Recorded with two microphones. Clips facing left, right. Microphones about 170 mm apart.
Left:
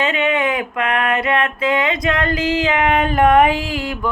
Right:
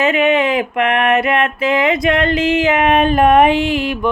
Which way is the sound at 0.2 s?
25° right (ahead or behind).